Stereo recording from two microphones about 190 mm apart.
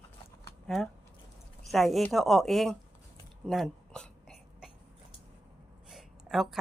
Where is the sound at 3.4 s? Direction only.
Centre (ahead or behind).